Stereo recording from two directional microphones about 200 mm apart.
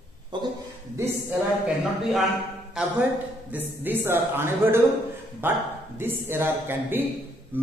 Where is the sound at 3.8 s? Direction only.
10° right (ahead or behind).